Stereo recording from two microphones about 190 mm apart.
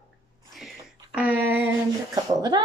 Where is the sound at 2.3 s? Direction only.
20° right (ahead or behind).